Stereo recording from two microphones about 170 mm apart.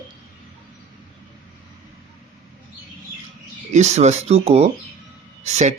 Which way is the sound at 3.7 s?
40° right (ahead or behind).